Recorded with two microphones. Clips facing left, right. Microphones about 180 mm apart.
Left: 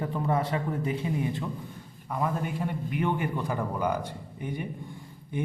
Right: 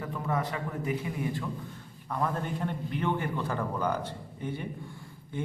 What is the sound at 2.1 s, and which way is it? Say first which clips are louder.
A man's voice: left 1 dB; 10° left (ahead or behind).